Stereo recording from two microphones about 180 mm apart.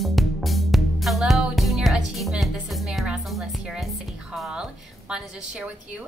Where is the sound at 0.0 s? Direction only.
Centre (ahead or behind).